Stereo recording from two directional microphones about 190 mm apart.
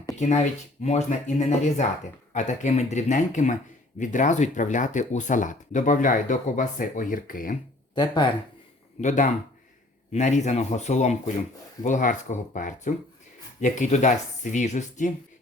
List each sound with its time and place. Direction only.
0.2 s speech: 35° left (ahead or behind)
7.9 s speech: 25° left (ahead or behind)
9.0 s speech: 40° left (ahead or behind)